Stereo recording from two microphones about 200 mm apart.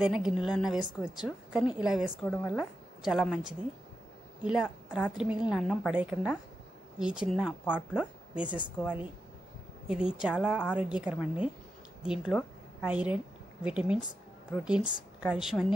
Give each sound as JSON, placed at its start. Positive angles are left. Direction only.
{"t": 0.0, "sound": "a woman's voice", "side_deg": -5}
{"t": 9.8, "sound": "a woman's voice", "side_deg": -5}